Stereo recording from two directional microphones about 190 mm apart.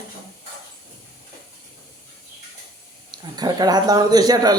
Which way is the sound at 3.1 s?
20° right (ahead or behind).